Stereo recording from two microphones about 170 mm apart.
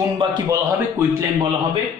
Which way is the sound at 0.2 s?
25° right (ahead or behind).